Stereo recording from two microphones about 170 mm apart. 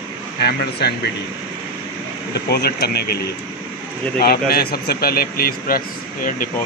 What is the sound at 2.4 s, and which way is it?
Speech, 70° left (ahead or behind).